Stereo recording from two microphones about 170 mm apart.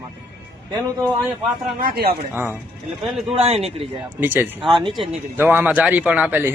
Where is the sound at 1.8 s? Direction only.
60° right (ahead or behind).